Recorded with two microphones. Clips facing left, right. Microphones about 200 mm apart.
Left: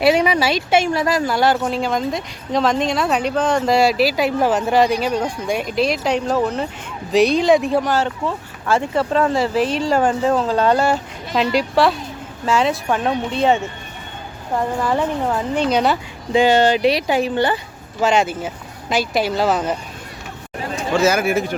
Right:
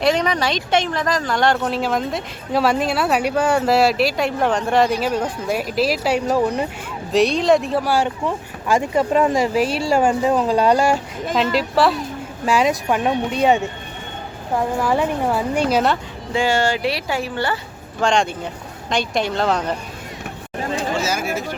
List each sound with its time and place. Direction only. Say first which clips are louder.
0.0 s speech: left 3 dB; 10° left (ahead or behind); by 6.7 s 15° right (ahead or behind)
7.1 s speech: left 2 dB; centre (ahead or behind)
11.5 s speech: left 2 dB; centre (ahead or behind)
12.5 s speech: even; 15° right (ahead or behind)
16.3 s speech: left 5 dB; 20° left (ahead or behind)
18.0 s speech: left 2 dB; 5° left (ahead or behind)
21.0 s speech: left 7 dB; 60° left (ahead or behind)